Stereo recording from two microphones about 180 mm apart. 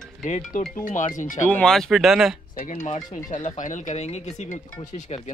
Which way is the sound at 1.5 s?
5° left (ahead or behind).